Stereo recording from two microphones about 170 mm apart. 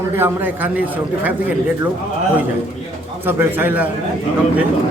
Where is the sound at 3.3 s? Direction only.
10° right (ahead or behind).